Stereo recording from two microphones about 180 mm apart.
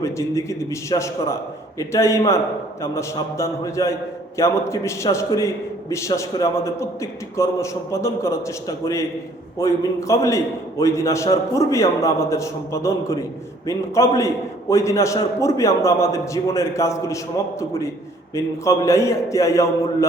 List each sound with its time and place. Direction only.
0.0 s a man's voice: 15° left (ahead or behind)